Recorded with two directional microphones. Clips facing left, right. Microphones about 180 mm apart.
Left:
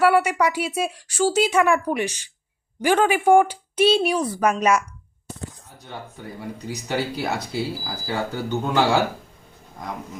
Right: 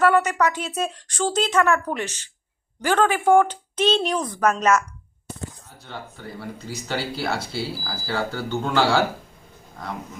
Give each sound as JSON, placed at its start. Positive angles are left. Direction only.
{"t": 0.0, "sound": "speech", "side_deg": 10}
{"t": 5.8, "sound": "speech", "side_deg": 15}